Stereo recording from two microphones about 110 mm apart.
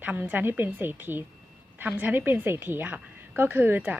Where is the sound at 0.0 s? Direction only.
15° right (ahead or behind).